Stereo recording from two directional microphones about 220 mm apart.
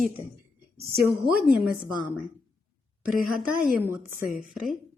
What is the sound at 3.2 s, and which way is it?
Speech, 40° right (ahead or behind).